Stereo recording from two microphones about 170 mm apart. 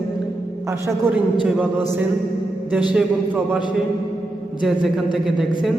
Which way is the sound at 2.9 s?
5° right (ahead or behind).